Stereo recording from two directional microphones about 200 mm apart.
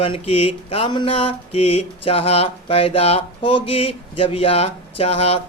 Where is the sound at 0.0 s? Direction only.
30° left (ahead or behind).